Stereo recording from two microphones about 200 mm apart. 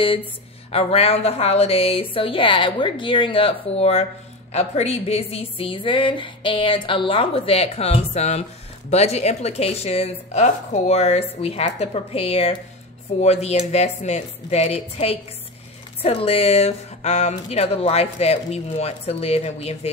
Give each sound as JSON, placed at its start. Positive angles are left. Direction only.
{"t": 0.7, "sound": "a woman's voice", "side_deg": 30}